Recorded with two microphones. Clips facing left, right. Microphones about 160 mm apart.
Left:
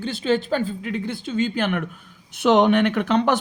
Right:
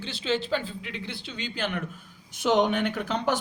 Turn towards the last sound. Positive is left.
turn(degrees=70)  # may be behind; listen again after turning